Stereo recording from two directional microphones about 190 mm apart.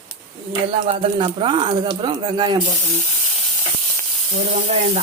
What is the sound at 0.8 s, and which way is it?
Speech, 30° right (ahead or behind).